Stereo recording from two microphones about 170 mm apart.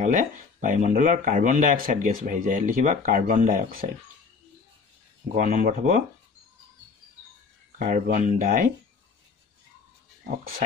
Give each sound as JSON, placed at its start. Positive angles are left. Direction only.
{"t": 0.0, "sound": "speech", "side_deg": -50}
{"t": 5.3, "sound": "speech", "side_deg": -50}
{"t": 7.8, "sound": "speech", "side_deg": -50}